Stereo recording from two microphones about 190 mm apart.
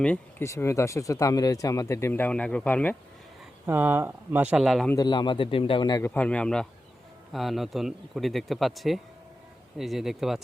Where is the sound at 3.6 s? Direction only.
10° right (ahead or behind).